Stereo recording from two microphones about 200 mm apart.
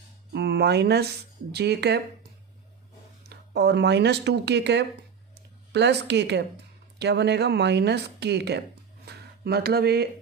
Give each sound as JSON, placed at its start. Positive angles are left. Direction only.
{"t": 0.3, "sound": "speech", "side_deg": -55}
{"t": 3.2, "sound": "speech", "side_deg": -55}